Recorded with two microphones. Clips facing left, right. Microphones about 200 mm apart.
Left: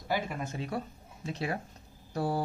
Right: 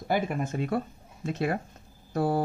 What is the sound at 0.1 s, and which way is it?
Speech, 55° right (ahead or behind).